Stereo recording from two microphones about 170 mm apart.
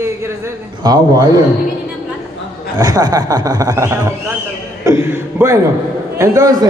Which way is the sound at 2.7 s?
20° right (ahead or behind).